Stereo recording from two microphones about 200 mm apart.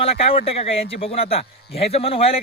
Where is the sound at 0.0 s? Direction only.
30° left (ahead or behind).